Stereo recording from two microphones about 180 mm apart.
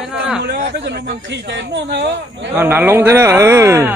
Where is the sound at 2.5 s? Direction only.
10° right (ahead or behind).